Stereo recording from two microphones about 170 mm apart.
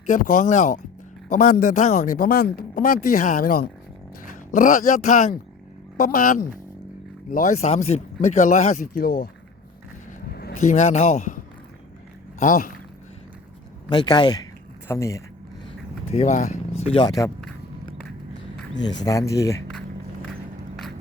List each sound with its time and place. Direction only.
0.0 s speech: 50° left (ahead or behind)
7.7 s speech: 40° left (ahead or behind); by 9.3 s 60° left (ahead or behind)
10.6 s speech: 45° left (ahead or behind)
12.4 s speech: 55° left (ahead or behind)
13.9 s speech: 25° left (ahead or behind)
16.1 s speech: 45° left (ahead or behind)
17.1 s speech: 20° left (ahead or behind)
18.8 s speech: 25° left (ahead or behind)